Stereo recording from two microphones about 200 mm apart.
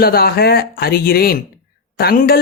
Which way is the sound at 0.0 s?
50° left (ahead or behind).